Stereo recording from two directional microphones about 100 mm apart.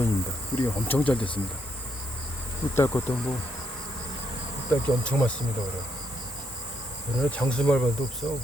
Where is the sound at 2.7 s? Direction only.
25° left (ahead or behind).